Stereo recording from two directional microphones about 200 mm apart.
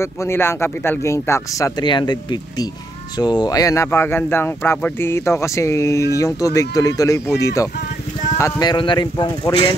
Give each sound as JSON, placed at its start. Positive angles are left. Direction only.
{"t": 0.0, "sound": "speech", "side_deg": 15}